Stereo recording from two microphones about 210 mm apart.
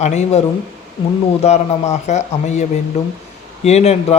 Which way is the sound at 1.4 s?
30° left (ahead or behind).